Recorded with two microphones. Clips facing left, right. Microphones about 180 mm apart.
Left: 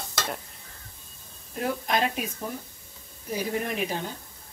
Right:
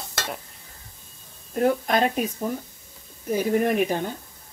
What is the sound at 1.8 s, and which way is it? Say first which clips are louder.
Speech: right 5 dB; 45° right (ahead or behind).